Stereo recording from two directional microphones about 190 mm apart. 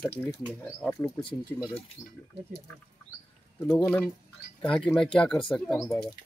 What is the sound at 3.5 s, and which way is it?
Speech, 10° left (ahead or behind).